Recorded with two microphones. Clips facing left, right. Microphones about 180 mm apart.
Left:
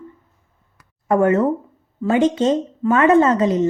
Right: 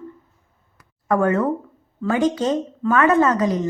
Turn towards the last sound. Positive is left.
turn(degrees=25)  # may be behind; listen again after turning